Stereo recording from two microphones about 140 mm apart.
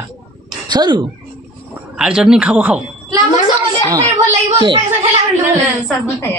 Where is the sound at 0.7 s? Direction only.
30° right (ahead or behind).